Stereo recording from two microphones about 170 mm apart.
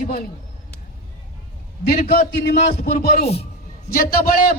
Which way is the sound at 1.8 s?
60° left (ahead or behind).